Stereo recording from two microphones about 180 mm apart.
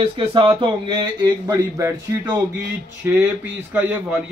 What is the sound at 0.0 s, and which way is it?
A man's voice, 30° right (ahead or behind).